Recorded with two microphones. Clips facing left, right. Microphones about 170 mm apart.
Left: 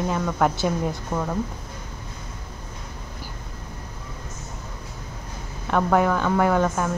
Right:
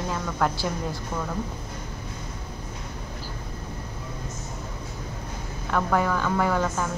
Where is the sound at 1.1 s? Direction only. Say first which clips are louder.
Left 4 dB; 40° left (ahead or behind).